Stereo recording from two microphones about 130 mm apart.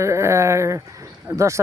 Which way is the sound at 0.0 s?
20° right (ahead or behind).